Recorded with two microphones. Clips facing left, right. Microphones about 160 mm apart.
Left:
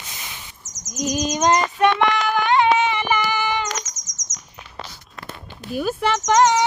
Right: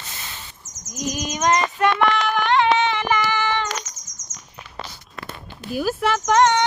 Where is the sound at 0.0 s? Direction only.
15° left (ahead or behind).